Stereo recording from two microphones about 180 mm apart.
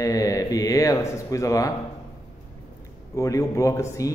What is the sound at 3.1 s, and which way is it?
A man's voice, 15° left (ahead or behind).